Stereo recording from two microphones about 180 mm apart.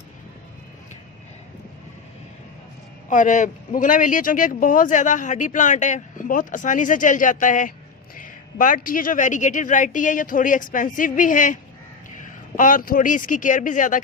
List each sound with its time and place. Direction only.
3.1 s speech: 45° left (ahead or behind)